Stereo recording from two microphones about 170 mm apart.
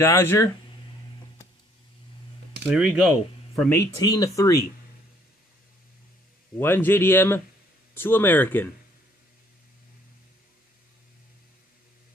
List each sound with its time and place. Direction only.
0.0 s speech: 15° left (ahead or behind)
2.7 s speech: 5° right (ahead or behind)
3.7 s speech: 20° left (ahead or behind)
6.6 s speech: 15° left (ahead or behind)